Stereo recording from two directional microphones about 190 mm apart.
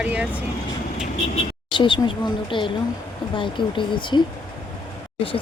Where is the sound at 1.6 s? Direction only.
25° left (ahead or behind).